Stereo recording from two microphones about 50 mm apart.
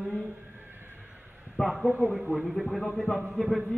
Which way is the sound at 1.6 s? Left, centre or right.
Centre.